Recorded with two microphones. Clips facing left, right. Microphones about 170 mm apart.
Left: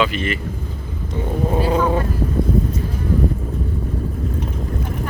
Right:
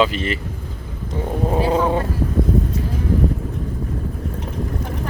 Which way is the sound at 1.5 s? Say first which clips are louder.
Even; 25° right (ahead or behind).